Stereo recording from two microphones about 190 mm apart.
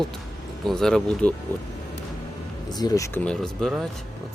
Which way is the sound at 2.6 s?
20° left (ahead or behind).